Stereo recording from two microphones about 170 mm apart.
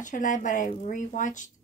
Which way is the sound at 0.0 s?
50° left (ahead or behind).